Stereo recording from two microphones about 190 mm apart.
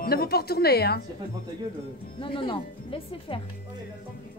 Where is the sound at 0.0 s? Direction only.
55° left (ahead or behind).